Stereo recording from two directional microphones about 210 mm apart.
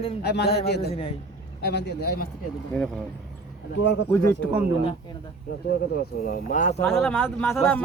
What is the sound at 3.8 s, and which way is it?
Speech, 60° left (ahead or behind).